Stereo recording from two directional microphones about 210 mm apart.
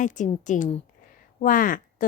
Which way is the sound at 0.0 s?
35° left (ahead or behind).